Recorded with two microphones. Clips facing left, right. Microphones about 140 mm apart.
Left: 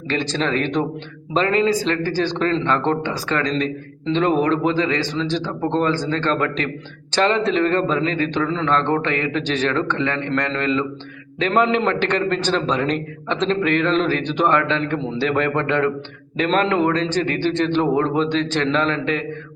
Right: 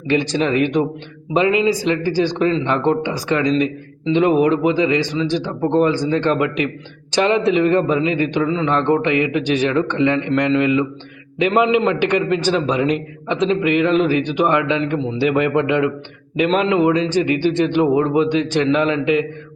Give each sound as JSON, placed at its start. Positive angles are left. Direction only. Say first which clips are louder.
{"t": 0.1, "sound": "a man's voice", "louder": "right 4 dB", "side_deg": -15}
{"t": 15.2, "sound": "a man's voice", "louder": "right 4 dB", "side_deg": -10}